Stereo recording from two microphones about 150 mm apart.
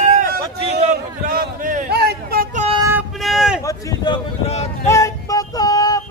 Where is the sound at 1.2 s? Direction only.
70° right (ahead or behind); by 2.4 s 90° right.